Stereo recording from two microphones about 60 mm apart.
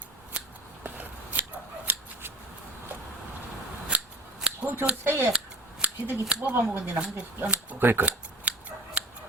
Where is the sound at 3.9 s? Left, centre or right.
Centre.